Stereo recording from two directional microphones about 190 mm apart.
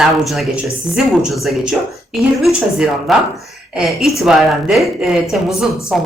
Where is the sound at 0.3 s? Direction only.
Centre (ahead or behind).